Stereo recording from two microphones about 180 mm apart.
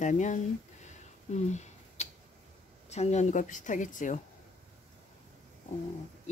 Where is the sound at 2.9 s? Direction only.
40° left (ahead or behind).